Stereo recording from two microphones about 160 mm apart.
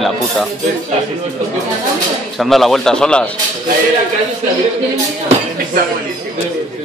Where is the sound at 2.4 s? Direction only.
Centre (ahead or behind).